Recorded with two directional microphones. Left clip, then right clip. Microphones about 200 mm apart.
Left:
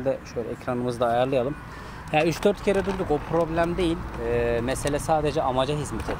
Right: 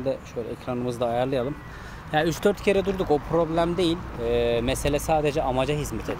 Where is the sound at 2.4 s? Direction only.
10° right (ahead or behind).